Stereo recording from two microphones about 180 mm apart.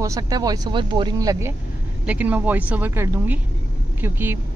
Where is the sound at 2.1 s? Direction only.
10° right (ahead or behind).